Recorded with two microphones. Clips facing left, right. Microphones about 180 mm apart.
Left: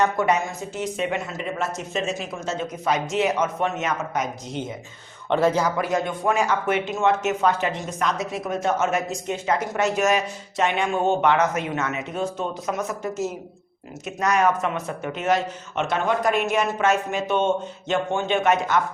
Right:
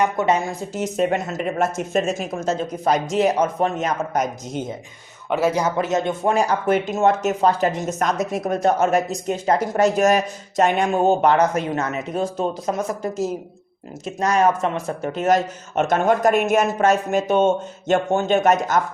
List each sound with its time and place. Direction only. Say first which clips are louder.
0.0 s a woman's voice: right 1 dB; 20° right (ahead or behind)
0.3 s speech: right 3 dB; 35° right (ahead or behind)
5.3 s a man's voice: even; 10° right (ahead or behind)
5.6 s speech: right 3 dB; 25° right (ahead or behind); by 18.8 s 40° right (ahead or behind)